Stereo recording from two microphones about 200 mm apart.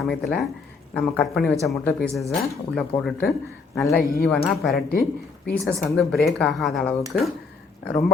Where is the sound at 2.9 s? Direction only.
25° left (ahead or behind).